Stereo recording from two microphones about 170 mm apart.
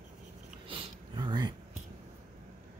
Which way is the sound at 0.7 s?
30° right (ahead or behind).